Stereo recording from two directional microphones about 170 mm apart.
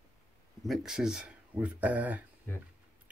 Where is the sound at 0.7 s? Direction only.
5° right (ahead or behind).